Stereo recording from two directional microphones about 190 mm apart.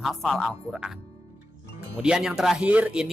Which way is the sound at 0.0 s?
Centre (ahead or behind).